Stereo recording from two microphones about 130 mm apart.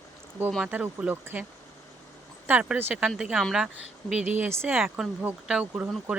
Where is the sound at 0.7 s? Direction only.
10° right (ahead or behind).